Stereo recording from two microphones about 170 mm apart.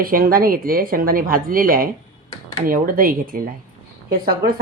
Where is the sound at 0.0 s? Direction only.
55° right (ahead or behind).